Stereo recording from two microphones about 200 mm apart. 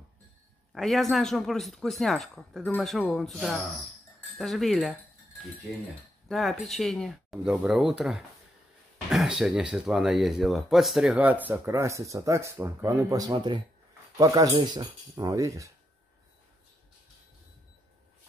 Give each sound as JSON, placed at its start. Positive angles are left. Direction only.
{"t": 0.7, "sound": "speech", "side_deg": 0}
{"t": 6.2, "sound": "speech", "side_deg": 0}